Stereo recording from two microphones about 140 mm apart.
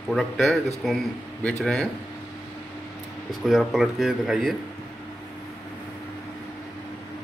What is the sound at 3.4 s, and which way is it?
Speech, centre (ahead or behind).